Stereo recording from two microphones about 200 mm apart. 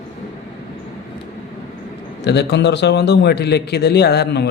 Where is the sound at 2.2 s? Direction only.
60° left (ahead or behind).